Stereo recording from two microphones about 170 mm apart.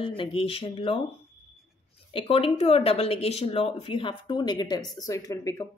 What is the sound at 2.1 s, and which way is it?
A woman's voice, 35° left (ahead or behind).